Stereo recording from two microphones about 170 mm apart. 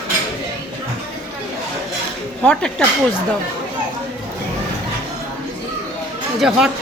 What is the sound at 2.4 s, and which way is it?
Speech, 5° left (ahead or behind).